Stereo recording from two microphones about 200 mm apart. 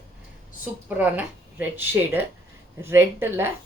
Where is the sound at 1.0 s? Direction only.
10° right (ahead or behind).